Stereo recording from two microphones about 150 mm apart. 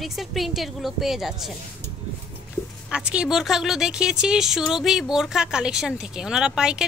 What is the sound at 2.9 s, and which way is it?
A woman's voice, 5° right (ahead or behind).